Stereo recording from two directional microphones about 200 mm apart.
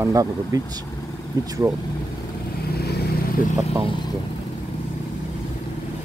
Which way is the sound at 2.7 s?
50° left (ahead or behind).